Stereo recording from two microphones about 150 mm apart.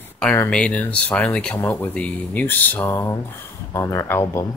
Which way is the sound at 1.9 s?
10° left (ahead or behind).